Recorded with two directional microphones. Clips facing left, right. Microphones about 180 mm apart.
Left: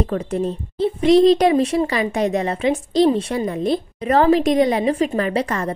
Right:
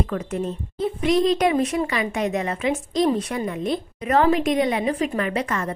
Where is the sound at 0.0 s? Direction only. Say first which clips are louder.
Left 4 dB; 35° left (ahead or behind).